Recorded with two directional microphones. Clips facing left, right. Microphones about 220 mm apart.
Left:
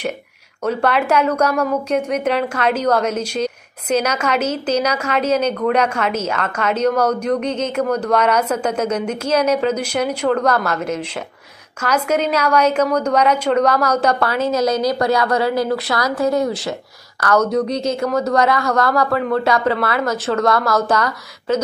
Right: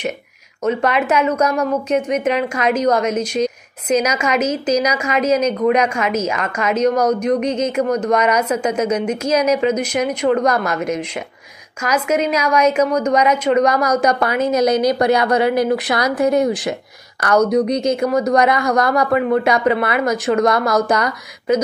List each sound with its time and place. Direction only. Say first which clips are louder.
0.7 s a woman's voice: right 1 dB; 5° right (ahead or behind)